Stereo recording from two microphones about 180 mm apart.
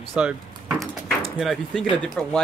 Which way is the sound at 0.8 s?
Centre (ahead or behind).